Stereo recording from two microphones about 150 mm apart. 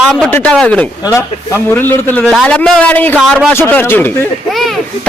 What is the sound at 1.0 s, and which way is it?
Speech, 25° left (ahead or behind).